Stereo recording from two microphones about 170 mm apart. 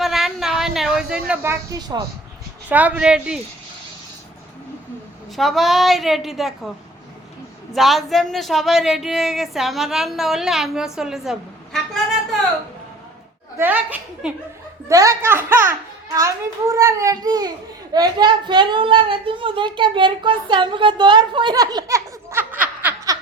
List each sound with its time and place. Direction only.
0.0 s a sound: centre (ahead or behind); by 2.0 s 20° right (ahead or behind)
2.6 s speech: 10° right (ahead or behind)
5.4 s a woman's voice: centre (ahead or behind)
7.8 s a woman's voice: centre (ahead or behind)
13.6 s speech: 10° right (ahead or behind)
14.8 s speech: 20° right (ahead or behind)